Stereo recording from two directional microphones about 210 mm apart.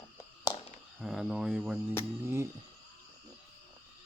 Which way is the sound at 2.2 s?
10° right (ahead or behind).